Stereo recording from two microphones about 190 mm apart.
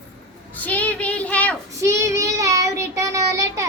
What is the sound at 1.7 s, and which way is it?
Child singing, 15° right (ahead or behind).